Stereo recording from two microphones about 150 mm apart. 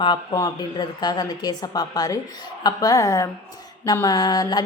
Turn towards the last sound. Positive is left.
turn(degrees=25)  # may be behind; listen again after turning